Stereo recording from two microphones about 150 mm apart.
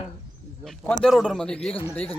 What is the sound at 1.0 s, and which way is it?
Speech, centre (ahead or behind).